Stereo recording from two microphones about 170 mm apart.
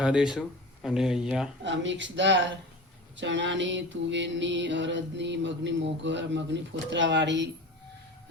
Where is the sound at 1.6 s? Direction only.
90° right.